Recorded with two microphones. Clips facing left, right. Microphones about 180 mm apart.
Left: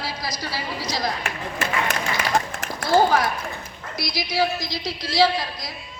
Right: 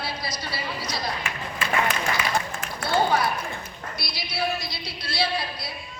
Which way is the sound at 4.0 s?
90° left.